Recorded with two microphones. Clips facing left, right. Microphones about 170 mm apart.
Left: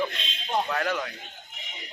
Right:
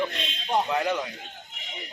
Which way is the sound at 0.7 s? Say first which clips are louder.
Right 2 dB; 20° right (ahead or behind).